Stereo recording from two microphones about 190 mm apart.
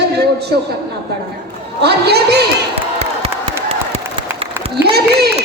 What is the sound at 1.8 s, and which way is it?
Speech, 60° right (ahead or behind).